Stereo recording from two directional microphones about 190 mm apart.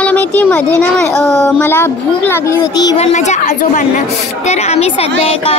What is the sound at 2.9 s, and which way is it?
A woman's voice, 35° left (ahead or behind).